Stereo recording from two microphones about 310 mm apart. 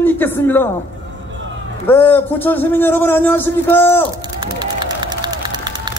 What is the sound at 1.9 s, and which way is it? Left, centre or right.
Speech, centre.